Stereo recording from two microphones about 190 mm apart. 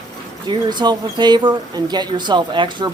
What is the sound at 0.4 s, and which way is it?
Speech, 25° right (ahead or behind).